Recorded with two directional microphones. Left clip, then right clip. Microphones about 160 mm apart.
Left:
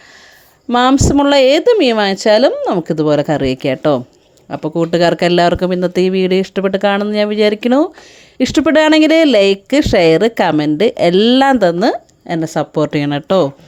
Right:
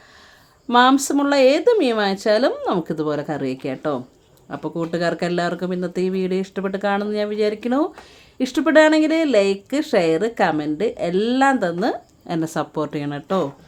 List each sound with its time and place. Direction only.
0.7 s speech: 40° left (ahead or behind)
12.3 s speech: 35° left (ahead or behind); by 13.5 s 55° left (ahead or behind)